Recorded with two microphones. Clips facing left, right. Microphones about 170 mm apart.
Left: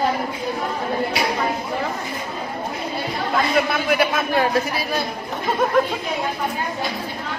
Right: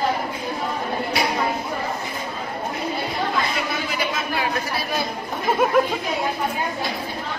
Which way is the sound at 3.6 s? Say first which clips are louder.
Left 7 dB; 60° left (ahead or behind).